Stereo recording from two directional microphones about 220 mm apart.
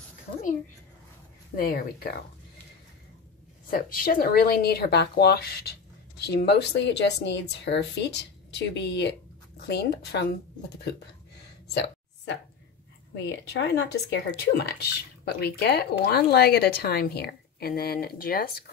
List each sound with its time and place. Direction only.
1.6 s speech: 40° left (ahead or behind)
3.7 s speech: 40° left (ahead or behind)
13.1 s speech: 55° left (ahead or behind)